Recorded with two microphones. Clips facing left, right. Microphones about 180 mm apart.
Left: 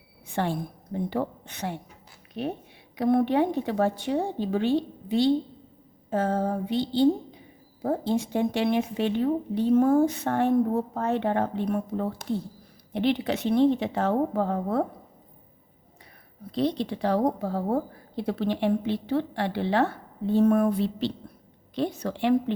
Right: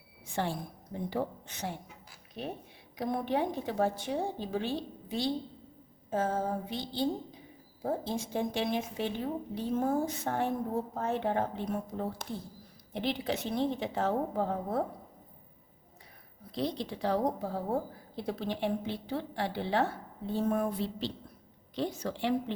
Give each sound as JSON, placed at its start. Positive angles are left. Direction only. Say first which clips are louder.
{"t": 0.3, "sound": "a woman's voice", "louder": "left 6 dB", "side_deg": 60}
{"t": 2.9, "sound": "speech", "louder": "left 9 dB", "side_deg": 65}
{"t": 16.6, "sound": "a woman's voice", "louder": "left 7 dB", "side_deg": 65}